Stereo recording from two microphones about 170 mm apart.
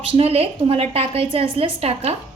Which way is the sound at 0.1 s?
35° right (ahead or behind).